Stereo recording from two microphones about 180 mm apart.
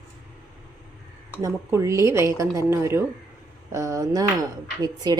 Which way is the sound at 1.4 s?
15° right (ahead or behind).